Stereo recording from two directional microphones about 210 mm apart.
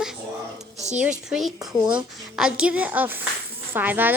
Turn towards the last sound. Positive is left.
turn(degrees=-10)  # may be behind; listen again after turning